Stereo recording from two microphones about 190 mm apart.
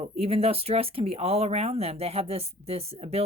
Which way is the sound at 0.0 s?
30° right (ahead or behind).